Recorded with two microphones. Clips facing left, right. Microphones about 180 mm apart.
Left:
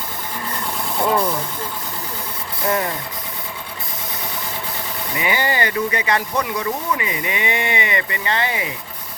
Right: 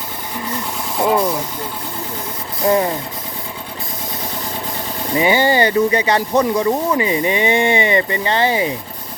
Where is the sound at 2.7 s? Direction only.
20° right (ahead or behind).